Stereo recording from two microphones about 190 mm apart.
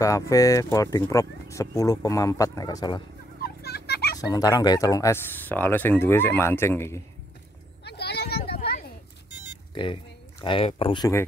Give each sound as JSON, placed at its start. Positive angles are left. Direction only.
{"t": 0.0, "sound": "speech", "side_deg": 15}
{"t": 3.4, "sound": "children playing", "side_deg": 55}
{"t": 4.2, "sound": "speech", "side_deg": 20}
{"t": 7.8, "sound": "a sound", "side_deg": 60}
{"t": 10.4, "sound": "speech", "side_deg": 30}